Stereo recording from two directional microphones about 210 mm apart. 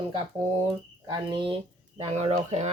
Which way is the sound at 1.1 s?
20° right (ahead or behind).